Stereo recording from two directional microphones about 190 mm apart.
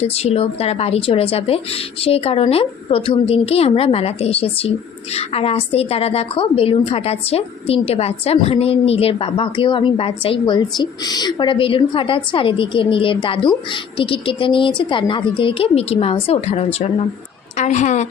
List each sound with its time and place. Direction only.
0.0 s a woman's voice: 35° left (ahead or behind)